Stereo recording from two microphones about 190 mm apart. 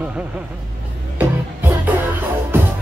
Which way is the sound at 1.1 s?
10° right (ahead or behind).